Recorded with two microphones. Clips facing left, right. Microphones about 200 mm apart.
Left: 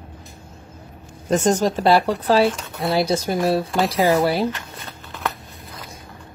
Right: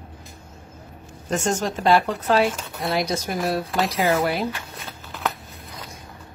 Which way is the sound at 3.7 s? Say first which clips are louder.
Left 4 dB; centre (ahead or behind).